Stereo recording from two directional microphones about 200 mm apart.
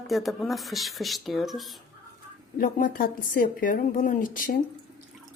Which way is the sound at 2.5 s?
45° left (ahead or behind).